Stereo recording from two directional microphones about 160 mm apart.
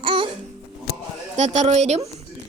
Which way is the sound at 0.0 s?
30° right (ahead or behind).